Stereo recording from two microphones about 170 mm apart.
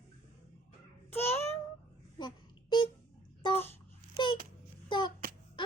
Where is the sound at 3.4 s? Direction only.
30° left (ahead or behind).